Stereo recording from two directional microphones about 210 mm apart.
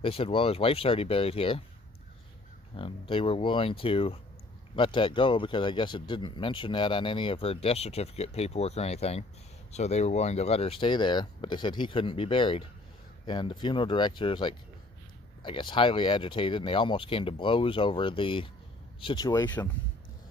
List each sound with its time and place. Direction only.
0.0 s speech: 25° left (ahead or behind)
2.7 s speech: 25° left (ahead or behind)